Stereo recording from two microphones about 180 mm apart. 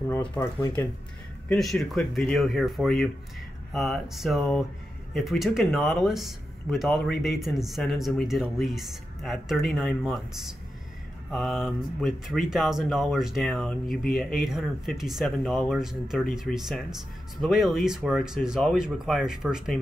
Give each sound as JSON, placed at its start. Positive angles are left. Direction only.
{"t": 0.4, "sound": "speech", "side_deg": 15}
{"t": 1.5, "sound": "speech", "side_deg": 0}